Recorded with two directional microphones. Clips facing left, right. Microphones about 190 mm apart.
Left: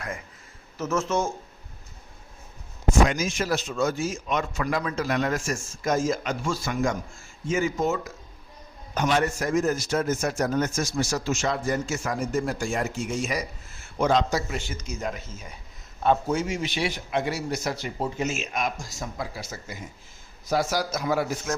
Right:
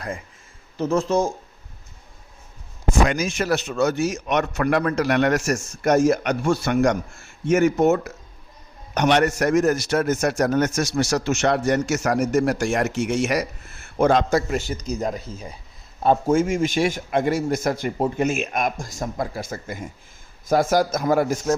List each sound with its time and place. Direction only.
0.8 s speech: 35° right (ahead or behind)
3.1 s a man's voice: 60° right (ahead or behind); by 15.5 s 35° right (ahead or behind)
16.0 s speech: 45° right (ahead or behind)